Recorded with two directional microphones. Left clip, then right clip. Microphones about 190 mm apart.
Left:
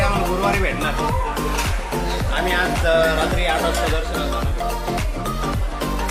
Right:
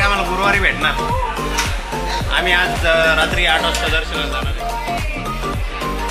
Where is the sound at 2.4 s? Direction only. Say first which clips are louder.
Right 3 dB; centre (ahead or behind).